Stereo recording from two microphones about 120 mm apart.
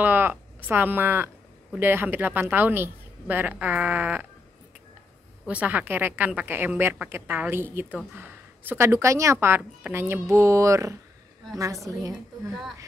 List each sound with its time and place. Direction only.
0.0 s a woman's voice: 15° right (ahead or behind)
5.5 s a woman's voice: 10° right (ahead or behind); by 12.2 s 25° right (ahead or behind)